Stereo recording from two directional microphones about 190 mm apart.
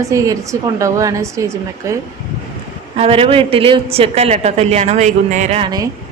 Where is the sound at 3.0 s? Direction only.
30° right (ahead or behind).